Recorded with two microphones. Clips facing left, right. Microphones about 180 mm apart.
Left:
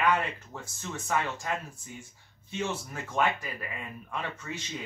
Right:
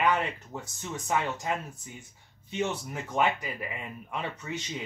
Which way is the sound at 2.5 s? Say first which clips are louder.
Right 2 dB; 20° right (ahead or behind).